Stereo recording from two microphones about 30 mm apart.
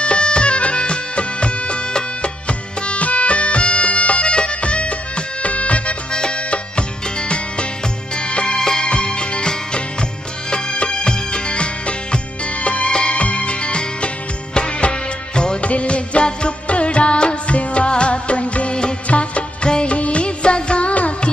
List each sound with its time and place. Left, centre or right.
0.0 s music: left
6.1 s music: left
8.5 s music: left
8.8 s music: left
15.6 s music: left
19.0 s music of bollywood: left
19.7 s music: left